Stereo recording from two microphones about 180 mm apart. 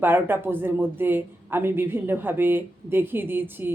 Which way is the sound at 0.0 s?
10° right (ahead or behind).